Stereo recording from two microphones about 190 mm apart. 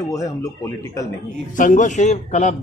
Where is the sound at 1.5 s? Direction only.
45° left (ahead or behind).